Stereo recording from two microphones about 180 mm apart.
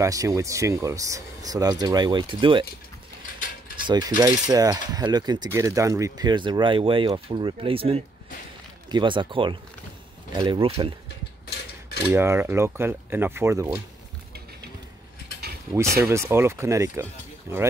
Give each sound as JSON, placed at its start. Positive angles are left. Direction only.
{"t": 0.0, "sound": "speech", "side_deg": -20}
{"t": 4.2, "sound": "speech", "side_deg": -20}
{"t": 12.1, "sound": "speech", "side_deg": -15}
{"t": 15.7, "sound": "speech", "side_deg": -15}